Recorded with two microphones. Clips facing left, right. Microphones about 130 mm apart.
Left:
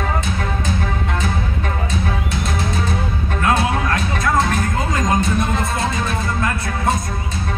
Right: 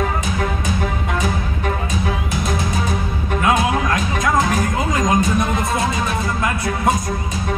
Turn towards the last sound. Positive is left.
turn(degrees=-20)  # may be behind; listen again after turning